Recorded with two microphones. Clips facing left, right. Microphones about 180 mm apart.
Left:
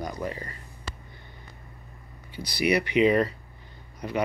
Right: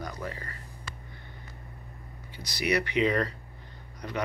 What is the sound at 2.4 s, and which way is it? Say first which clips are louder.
Speech: left 4 dB; 10° left (ahead or behind).